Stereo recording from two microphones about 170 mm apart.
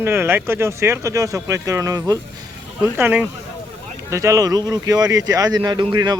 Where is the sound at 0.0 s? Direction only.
15° right (ahead or behind).